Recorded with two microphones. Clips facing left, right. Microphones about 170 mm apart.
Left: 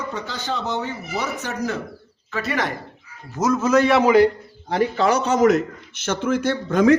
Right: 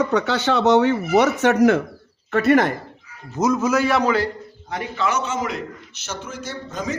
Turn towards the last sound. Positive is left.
turn(degrees=60)  # may be behind; listen again after turning